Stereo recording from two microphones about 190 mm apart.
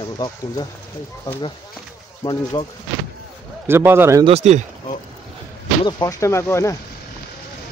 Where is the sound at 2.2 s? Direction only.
30° left (ahead or behind).